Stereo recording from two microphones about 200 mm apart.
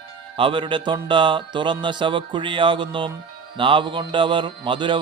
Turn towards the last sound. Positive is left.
turn(degrees=-25)  # may be behind; listen again after turning